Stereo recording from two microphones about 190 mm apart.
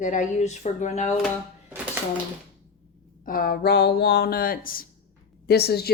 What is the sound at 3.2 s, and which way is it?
Speech, 50° left (ahead or behind).